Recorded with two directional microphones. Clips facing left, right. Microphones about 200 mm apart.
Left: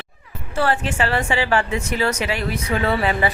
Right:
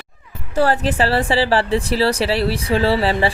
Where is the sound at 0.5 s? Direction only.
40° right (ahead or behind).